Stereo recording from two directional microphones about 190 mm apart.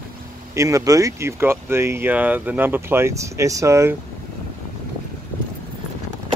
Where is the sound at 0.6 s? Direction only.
15° right (ahead or behind).